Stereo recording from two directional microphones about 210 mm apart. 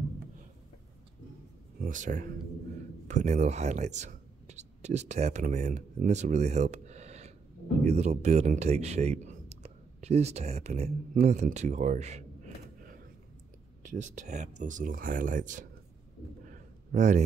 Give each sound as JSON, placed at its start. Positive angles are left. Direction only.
{"t": 1.8, "sound": "speech", "side_deg": -35}
{"t": 13.8, "sound": "speech", "side_deg": -35}
{"t": 16.4, "sound": "a sound", "side_deg": -35}